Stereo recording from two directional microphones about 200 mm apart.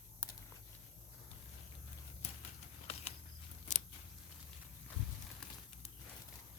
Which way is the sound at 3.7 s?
35° left (ahead or behind).